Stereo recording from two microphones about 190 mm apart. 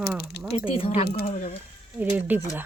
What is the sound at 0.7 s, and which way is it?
Speech, 30° left (ahead or behind).